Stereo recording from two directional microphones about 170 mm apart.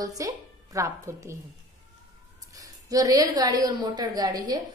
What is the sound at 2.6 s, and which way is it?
A woman's voice, 20° right (ahead or behind).